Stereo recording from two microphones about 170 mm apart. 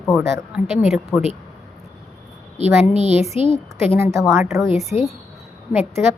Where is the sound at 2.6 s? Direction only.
40° right (ahead or behind).